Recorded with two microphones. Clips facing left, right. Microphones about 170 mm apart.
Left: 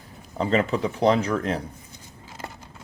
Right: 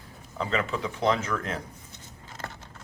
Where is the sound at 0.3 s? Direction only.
40° left (ahead or behind).